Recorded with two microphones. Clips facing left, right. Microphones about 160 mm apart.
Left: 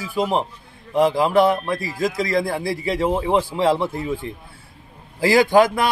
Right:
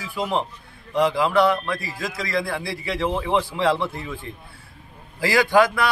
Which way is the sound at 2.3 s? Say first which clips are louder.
Left 4 dB; 45° left (ahead or behind).